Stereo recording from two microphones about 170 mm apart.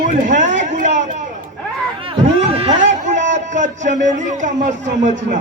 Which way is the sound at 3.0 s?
45° right (ahead or behind).